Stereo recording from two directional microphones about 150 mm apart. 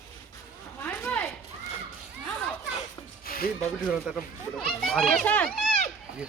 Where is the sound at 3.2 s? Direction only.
80° left.